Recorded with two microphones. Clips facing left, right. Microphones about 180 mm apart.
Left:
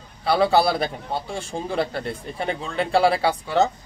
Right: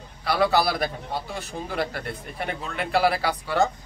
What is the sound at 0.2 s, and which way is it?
A man's voice, 25° left (ahead or behind).